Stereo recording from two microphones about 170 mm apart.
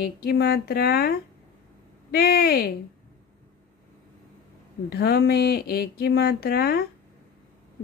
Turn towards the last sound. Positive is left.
turn(degrees=65)  # may be behind; listen again after turning